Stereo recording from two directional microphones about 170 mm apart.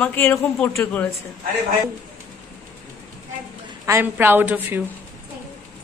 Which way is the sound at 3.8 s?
15° right (ahead or behind).